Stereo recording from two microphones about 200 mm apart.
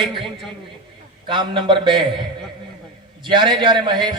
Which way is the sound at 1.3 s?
25° right (ahead or behind).